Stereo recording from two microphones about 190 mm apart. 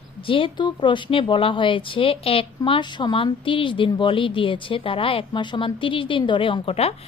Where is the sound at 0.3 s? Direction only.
25° left (ahead or behind).